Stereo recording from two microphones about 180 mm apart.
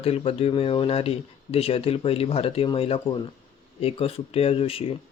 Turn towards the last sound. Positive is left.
turn(degrees=30)  # may be behind; listen again after turning